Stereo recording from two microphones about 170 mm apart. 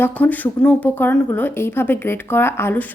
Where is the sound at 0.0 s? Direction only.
10° left (ahead or behind).